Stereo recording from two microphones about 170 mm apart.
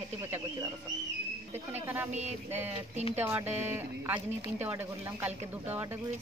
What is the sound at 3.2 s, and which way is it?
Speech, 10° right (ahead or behind).